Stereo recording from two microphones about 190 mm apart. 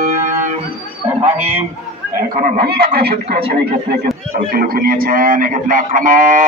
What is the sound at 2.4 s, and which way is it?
A man's voice, 55° right (ahead or behind).